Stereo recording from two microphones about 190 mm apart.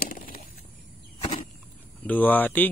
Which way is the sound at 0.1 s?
50° left (ahead or behind).